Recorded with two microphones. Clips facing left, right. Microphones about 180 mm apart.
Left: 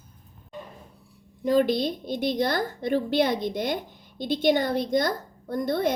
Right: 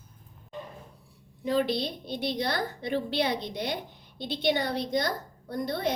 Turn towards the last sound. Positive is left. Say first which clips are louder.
# left 5 dB
turn(degrees=50)  # may be behind; listen again after turning